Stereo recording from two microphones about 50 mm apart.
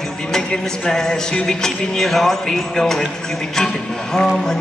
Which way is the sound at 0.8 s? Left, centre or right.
Centre.